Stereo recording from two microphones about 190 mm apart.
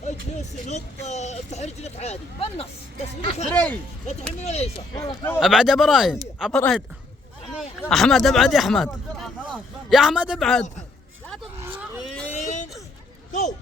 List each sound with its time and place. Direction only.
0.0 s speech: 40° left (ahead or behind)
3.5 s speech: 10° left (ahead or behind)
4.4 s speech: 35° left (ahead or behind)
5.4 s speech: centre (ahead or behind)
11.6 s a sound: 10° right (ahead or behind)
12.3 s a sound: 40° left (ahead or behind)